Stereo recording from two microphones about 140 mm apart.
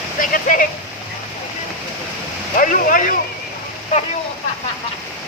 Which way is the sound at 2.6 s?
75° left (ahead or behind).